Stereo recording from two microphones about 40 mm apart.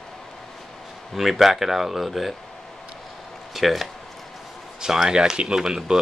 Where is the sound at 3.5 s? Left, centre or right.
Centre.